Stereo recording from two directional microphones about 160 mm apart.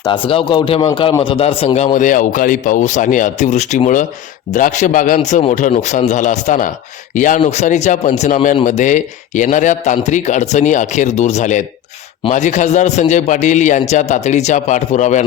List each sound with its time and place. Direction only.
0.0 s a man's voice: 30° left (ahead or behind); by 15.2 s 45° left (ahead or behind)